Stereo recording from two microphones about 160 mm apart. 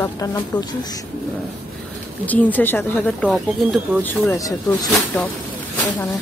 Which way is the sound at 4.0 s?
15° left (ahead or behind).